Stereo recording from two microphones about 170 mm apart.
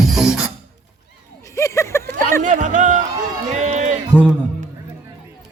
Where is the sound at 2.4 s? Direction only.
45° right (ahead or behind).